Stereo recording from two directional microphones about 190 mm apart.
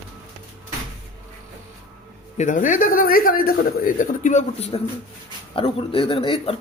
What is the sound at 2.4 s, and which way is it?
A man's voice, 40° left (ahead or behind).